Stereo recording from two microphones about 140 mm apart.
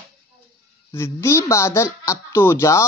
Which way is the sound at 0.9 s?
20° left (ahead or behind).